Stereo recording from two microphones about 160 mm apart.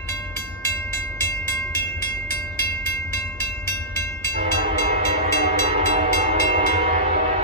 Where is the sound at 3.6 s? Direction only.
15° left (ahead or behind).